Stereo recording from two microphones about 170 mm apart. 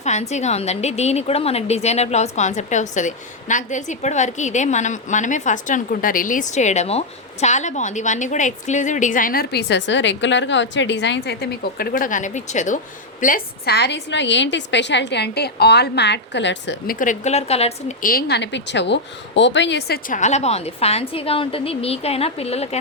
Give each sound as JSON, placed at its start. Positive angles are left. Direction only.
{"t": 0.0, "sound": "a woman's voice", "side_deg": 40}
{"t": 13.2, "sound": "a woman's voice", "side_deg": 65}
{"t": 18.0, "sound": "speech", "side_deg": 60}
{"t": 20.1, "sound": "a woman's voice", "side_deg": 45}